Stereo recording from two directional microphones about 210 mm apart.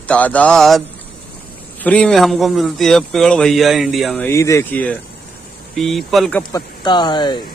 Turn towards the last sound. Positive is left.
turn(degrees=20)  # may be behind; listen again after turning